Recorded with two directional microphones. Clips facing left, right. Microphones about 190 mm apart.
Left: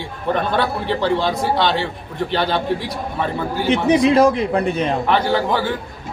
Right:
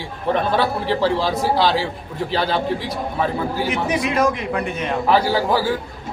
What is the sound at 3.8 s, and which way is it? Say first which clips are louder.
A man's voice: left 7 dB; 30° left (ahead or behind).